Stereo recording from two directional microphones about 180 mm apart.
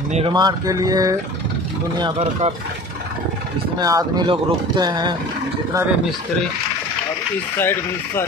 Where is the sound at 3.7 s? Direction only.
20° right (ahead or behind).